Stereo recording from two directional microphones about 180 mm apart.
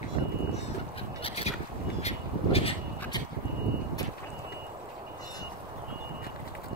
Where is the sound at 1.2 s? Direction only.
35° left (ahead or behind).